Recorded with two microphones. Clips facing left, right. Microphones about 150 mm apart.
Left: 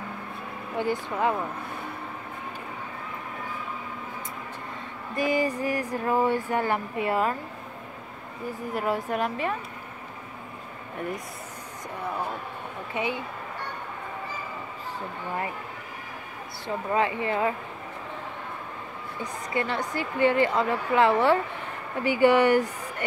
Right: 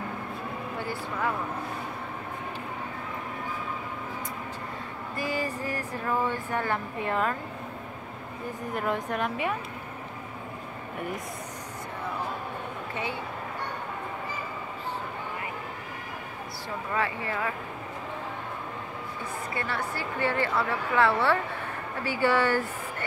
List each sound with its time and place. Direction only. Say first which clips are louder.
5.1 s speech: left 6 dB; 15° left (ahead or behind)
8.7 s a woman's voice: left 2 dB; 5° left (ahead or behind)
12.9 s speech: left 5 dB; 15° left (ahead or behind)
16.6 s speech: left 5 dB; 20° left (ahead or behind)
19.5 s speech: left 6 dB; 20° left (ahead or behind)